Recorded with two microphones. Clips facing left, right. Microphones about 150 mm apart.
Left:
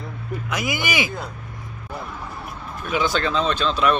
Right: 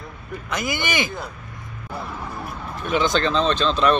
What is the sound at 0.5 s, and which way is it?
Speech, 5° left (ahead or behind).